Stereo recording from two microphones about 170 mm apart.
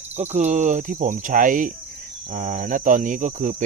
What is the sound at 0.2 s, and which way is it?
Speech, 40° right (ahead or behind).